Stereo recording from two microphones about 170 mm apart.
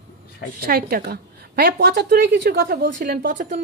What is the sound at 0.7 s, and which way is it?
A woman's voice, 60° right (ahead or behind).